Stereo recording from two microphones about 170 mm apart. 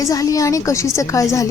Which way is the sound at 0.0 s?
20° left (ahead or behind).